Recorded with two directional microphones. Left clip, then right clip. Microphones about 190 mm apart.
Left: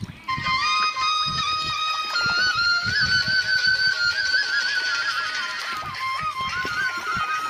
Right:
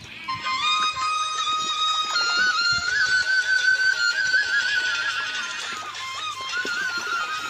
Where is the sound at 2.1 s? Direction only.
30° right (ahead or behind).